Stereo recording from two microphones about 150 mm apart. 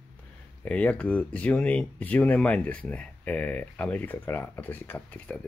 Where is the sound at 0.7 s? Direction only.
10° left (ahead or behind).